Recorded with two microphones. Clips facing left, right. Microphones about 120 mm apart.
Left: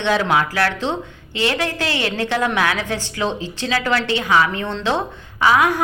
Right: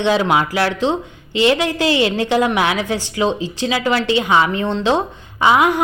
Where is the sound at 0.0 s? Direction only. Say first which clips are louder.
Right 2 dB; 15° right (ahead or behind).